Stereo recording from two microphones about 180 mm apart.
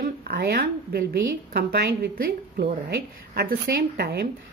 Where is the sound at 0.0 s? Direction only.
60° right (ahead or behind).